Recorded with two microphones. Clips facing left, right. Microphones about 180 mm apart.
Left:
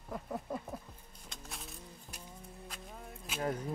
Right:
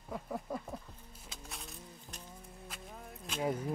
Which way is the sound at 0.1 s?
Centre (ahead or behind).